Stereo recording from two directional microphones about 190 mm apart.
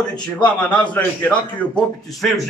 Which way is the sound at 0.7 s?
5° left (ahead or behind).